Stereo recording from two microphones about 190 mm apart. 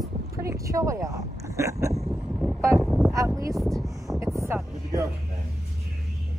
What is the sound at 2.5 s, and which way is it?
Vehicle, 15° right (ahead or behind).